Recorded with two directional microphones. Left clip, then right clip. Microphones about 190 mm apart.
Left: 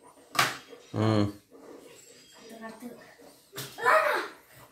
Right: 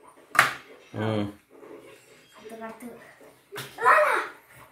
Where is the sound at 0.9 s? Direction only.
25° left (ahead or behind).